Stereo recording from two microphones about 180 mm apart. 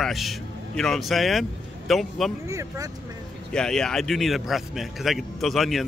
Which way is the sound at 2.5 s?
15° right (ahead or behind).